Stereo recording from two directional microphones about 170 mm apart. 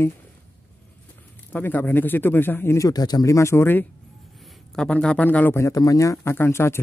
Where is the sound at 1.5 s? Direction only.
10° left (ahead or behind).